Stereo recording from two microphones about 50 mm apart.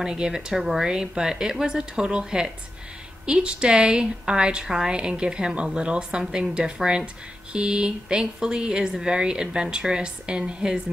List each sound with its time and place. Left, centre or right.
0.0 s speech: centre